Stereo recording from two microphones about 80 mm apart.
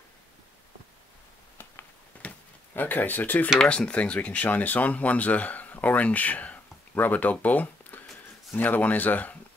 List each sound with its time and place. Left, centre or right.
2.2 s drawer open or close: left
3.5 s speech: centre